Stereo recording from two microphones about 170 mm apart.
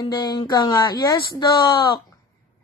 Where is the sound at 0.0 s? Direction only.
25° left (ahead or behind).